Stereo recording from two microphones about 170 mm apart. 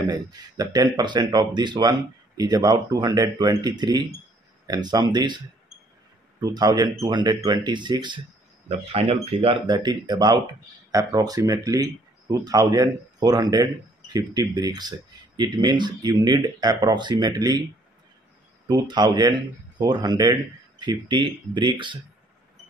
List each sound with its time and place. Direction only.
0.0 s speech: 20° right (ahead or behind)
6.4 s speech: 25° right (ahead or behind)
18.7 s speech: 25° right (ahead or behind)